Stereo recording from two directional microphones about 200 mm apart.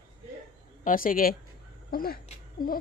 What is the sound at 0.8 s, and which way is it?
Speech, 45° left (ahead or behind).